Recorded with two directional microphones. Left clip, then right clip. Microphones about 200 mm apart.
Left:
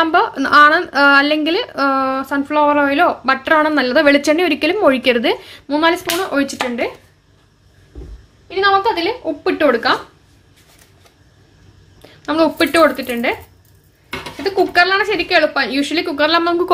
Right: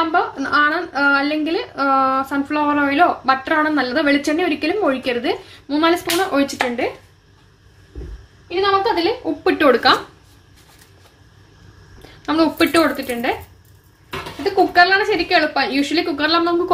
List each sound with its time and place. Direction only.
0.1 s speech: 35° left (ahead or behind); by 6.9 s 10° left (ahead or behind)
9.2 s speech: 15° left (ahead or behind)
12.0 s speech: 10° left (ahead or behind)
14.4 s a woman's voice: 30° left (ahead or behind)